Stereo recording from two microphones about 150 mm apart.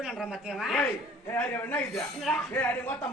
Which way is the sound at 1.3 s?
10° left (ahead or behind).